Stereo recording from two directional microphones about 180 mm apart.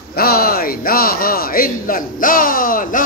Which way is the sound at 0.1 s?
60° left (ahead or behind).